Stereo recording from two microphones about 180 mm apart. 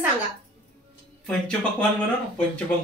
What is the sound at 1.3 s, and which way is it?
Speech, 5° left (ahead or behind).